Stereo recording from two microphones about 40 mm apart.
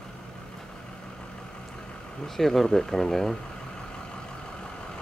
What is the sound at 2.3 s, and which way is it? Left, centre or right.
Vehicle, centre.